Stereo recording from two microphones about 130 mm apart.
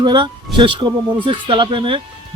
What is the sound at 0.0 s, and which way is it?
Speech, 40° right (ahead or behind).